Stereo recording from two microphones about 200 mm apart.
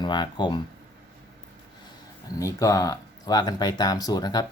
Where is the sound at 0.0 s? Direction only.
20° left (ahead or behind).